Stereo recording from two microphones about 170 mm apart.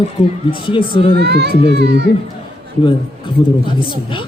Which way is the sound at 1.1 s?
75° right (ahead or behind).